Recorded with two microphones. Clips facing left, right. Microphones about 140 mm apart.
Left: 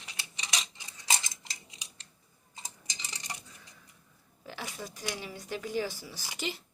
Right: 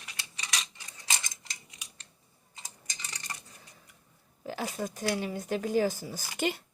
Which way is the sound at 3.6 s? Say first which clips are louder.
Right 1 dB; 35° right (ahead or behind).